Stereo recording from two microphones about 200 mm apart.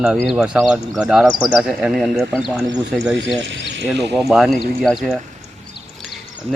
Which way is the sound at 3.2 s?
60° right (ahead or behind).